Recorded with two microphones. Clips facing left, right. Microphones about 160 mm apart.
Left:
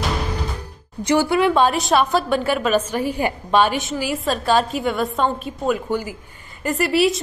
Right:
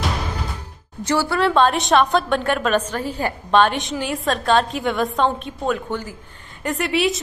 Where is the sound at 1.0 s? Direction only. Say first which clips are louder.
Left 3 dB; 15° left (ahead or behind).